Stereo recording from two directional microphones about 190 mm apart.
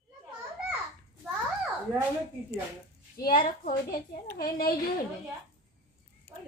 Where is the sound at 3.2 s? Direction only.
50° left (ahead or behind).